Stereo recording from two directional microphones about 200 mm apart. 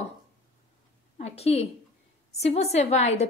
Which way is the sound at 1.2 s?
30° left (ahead or behind).